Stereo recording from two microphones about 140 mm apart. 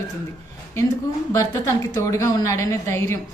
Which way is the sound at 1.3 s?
25° left (ahead or behind).